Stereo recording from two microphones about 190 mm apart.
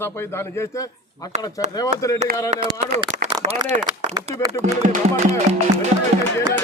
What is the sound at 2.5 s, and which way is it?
Speech, 35° right (ahead or behind).